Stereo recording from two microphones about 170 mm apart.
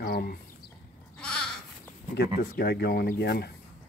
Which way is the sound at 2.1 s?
70° left (ahead or behind).